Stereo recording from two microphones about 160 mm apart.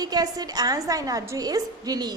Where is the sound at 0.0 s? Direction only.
25° right (ahead or behind).